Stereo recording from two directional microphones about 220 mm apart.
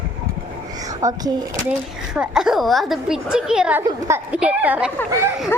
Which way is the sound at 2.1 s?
Centre (ahead or behind).